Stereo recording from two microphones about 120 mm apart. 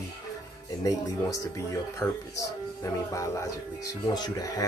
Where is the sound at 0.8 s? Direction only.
25° left (ahead or behind).